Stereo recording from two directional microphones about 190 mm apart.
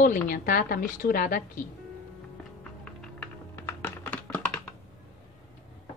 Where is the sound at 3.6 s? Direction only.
10° left (ahead or behind).